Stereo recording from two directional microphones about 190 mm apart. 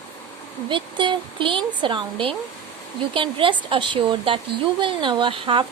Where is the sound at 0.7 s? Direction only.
25° right (ahead or behind).